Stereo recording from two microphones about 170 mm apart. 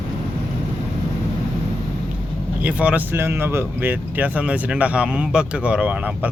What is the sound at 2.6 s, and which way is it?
Speech, 10° right (ahead or behind).